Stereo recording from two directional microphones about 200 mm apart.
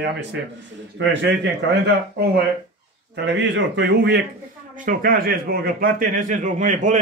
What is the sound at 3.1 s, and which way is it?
Speech, 60° right (ahead or behind).